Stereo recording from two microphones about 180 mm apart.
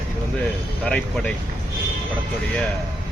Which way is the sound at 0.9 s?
5° left (ahead or behind).